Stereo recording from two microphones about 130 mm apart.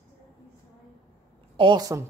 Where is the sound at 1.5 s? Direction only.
40° right (ahead or behind).